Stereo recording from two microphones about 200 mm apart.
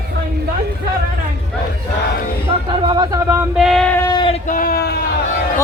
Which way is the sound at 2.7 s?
20° right (ahead or behind).